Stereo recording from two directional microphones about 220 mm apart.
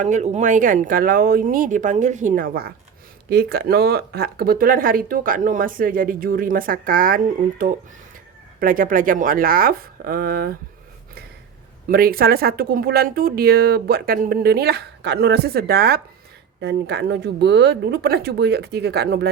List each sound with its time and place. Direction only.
0.0 s speech: 35° right (ahead or behind)
11.9 s speech: 40° right (ahead or behind)